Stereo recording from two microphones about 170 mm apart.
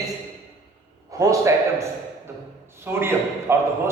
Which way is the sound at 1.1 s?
20° right (ahead or behind).